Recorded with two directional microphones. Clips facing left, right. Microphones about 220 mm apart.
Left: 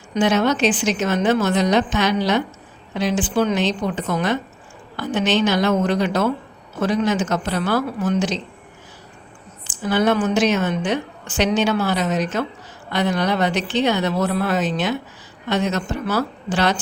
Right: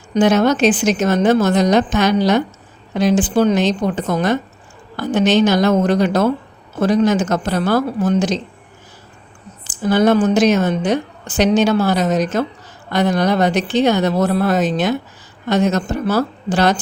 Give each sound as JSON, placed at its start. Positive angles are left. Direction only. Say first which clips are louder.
{"t": 0.1, "sound": "a woman's voice", "louder": "right 4 dB", "side_deg": -40}
{"t": 9.8, "sound": "a woman's voice", "louder": "right 5 dB", "side_deg": -40}